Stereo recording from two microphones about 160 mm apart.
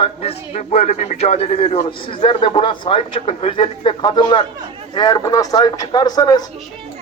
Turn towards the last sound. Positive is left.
turn(degrees=25)  # may be behind; listen again after turning